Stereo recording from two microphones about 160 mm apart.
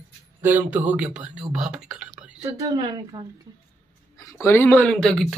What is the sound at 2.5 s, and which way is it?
Speech, 25° right (ahead or behind).